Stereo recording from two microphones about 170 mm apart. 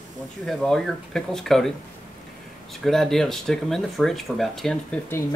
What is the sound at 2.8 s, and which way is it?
Speech, centre (ahead or behind).